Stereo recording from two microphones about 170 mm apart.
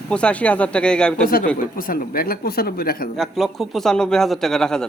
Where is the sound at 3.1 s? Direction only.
Centre (ahead or behind).